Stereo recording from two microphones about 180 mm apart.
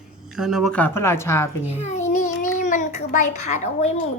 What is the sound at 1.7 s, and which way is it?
A child's voice, 40° left (ahead or behind).